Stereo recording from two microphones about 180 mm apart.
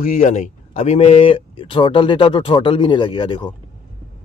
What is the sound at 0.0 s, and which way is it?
Speech, 45° left (ahead or behind).